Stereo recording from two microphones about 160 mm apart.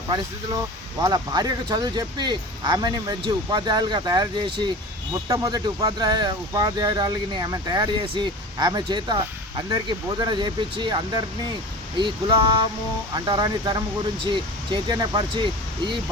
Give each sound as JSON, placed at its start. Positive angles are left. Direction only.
{"t": 1.0, "sound": "speech", "side_deg": -25}